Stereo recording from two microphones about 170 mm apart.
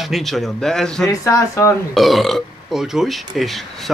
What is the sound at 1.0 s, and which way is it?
Speech, 20° left (ahead or behind).